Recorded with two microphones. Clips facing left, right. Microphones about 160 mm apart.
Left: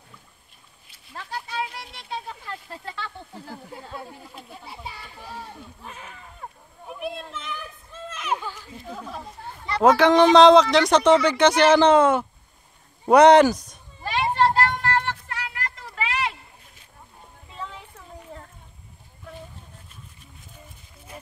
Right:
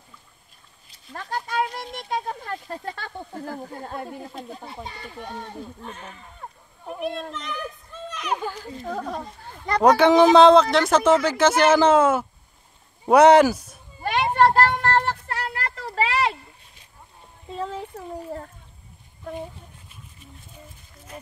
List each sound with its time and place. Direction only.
0.8 s speech: 45° right (ahead or behind)
5.3 s speech: 5° left (ahead or behind)
7.0 s children playing: 5° left (ahead or behind)
8.8 s speech: 55° right (ahead or behind)
9.8 s speech: centre (ahead or behind)
14.0 s a sound: 55° right (ahead or behind); by 16.3 s 40° right (ahead or behind)
17.5 s a sound: 40° right (ahead or behind)